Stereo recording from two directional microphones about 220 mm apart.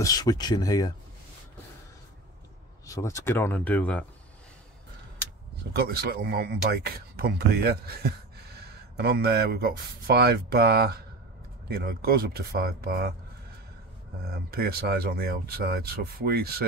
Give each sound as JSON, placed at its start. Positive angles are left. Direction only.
{"t": 0.0, "sound": "speech", "side_deg": 15}
{"t": 2.9, "sound": "speech", "side_deg": 15}
{"t": 5.7, "sound": "speech", "side_deg": -45}
{"t": 14.3, "sound": "speech", "side_deg": -45}